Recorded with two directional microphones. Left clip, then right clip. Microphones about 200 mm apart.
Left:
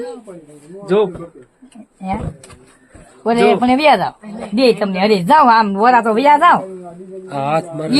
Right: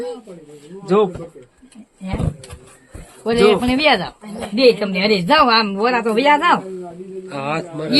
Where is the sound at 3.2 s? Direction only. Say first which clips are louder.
Left 2 dB; 50° left (ahead or behind).